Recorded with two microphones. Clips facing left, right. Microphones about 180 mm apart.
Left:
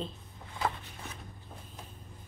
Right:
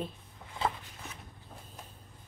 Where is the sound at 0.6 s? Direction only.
25° right (ahead or behind).